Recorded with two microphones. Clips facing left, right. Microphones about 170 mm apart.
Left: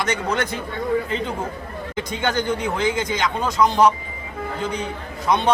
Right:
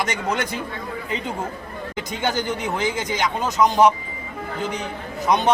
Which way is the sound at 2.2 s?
5° right (ahead or behind).